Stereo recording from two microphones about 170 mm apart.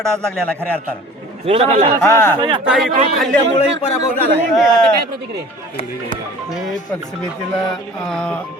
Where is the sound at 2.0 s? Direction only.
15° left (ahead or behind).